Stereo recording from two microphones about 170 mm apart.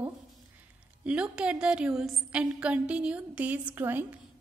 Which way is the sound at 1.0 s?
5° right (ahead or behind).